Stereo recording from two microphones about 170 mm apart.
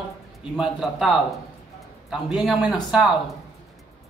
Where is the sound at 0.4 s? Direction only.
5° right (ahead or behind).